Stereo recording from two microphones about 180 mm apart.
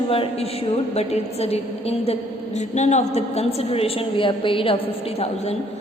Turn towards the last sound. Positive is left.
turn(degrees=35)  # may be behind; listen again after turning